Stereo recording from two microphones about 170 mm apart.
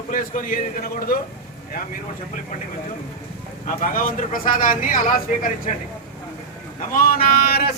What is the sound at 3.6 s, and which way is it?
Speech, 55° left (ahead or behind).